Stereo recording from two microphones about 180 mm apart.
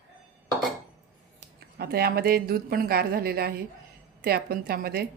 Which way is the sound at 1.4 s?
60° right (ahead or behind).